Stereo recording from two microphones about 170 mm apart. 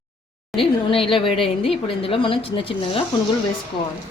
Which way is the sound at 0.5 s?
30° left (ahead or behind).